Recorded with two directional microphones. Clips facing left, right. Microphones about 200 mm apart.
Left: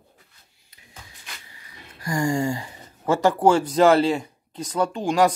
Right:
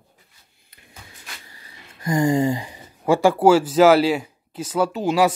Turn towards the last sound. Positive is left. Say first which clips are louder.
# right 1 dB
turn(degrees=-5)  # may be behind; listen again after turning